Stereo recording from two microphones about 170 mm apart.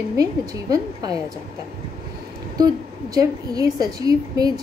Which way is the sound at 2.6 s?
25° right (ahead or behind).